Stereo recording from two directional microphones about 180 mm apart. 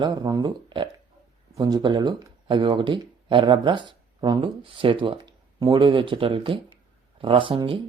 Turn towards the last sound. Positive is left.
turn(degrees=-30)  # may be behind; listen again after turning